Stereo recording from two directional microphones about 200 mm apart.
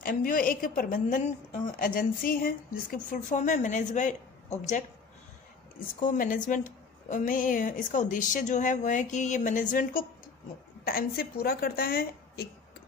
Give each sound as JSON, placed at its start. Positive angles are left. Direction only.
{"t": 0.0, "sound": "a woman's voice", "side_deg": 45}
{"t": 5.9, "sound": "a woman's voice", "side_deg": 40}